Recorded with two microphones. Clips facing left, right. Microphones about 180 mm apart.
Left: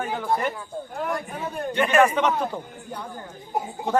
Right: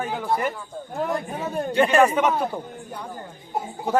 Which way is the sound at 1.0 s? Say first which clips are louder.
Right 2 dB; 25° right (ahead or behind).